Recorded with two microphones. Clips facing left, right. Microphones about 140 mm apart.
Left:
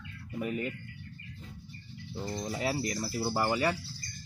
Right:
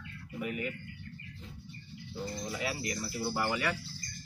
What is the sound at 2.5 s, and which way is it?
Speech, 35° left (ahead or behind).